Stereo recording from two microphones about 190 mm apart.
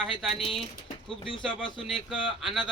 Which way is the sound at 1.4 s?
Centre (ahead or behind).